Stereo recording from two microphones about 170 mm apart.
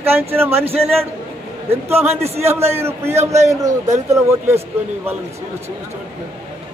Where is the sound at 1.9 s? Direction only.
35° right (ahead or behind).